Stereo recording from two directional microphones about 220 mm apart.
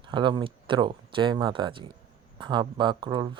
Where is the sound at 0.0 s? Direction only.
20° right (ahead or behind).